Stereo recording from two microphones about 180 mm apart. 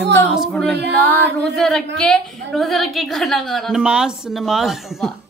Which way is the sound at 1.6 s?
Centre (ahead or behind).